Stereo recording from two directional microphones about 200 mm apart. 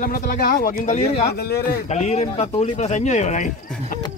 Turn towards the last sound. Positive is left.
turn(degrees=40)  # may be behind; listen again after turning